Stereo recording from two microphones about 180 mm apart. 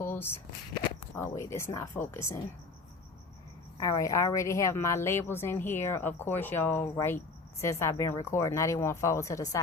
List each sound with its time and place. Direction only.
0.0 s a sound: 10° left (ahead or behind)
1.1 s a woman's voice: 15° left (ahead or behind)
3.8 s a woman's voice: 20° left (ahead or behind)